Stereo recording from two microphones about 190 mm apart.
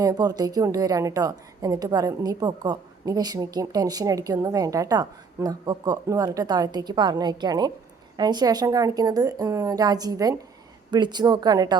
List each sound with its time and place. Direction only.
0.0 s a woman's voice: 20° right (ahead or behind)